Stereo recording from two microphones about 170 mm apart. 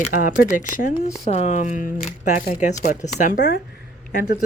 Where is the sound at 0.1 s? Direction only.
50° left (ahead or behind).